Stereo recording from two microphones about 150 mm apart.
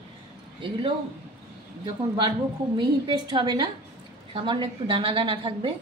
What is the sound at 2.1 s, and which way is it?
A woman's voice, 30° right (ahead or behind).